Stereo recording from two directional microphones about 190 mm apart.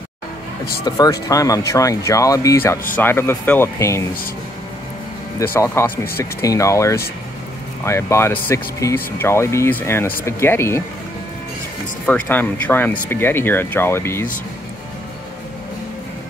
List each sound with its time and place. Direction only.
0.8 s speech: 20° left (ahead or behind)
5.5 s speech: 10° left (ahead or behind)
12.1 s speech: 10° left (ahead or behind)